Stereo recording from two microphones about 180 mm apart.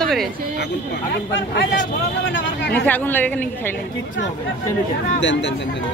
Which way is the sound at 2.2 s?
80° left.